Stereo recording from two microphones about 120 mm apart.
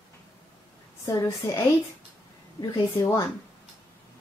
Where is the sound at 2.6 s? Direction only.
25° left (ahead or behind).